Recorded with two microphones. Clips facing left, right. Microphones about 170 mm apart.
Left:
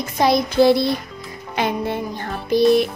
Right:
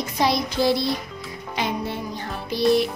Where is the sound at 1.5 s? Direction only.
55° left (ahead or behind).